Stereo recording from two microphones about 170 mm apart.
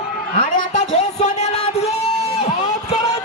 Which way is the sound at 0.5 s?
45° left (ahead or behind).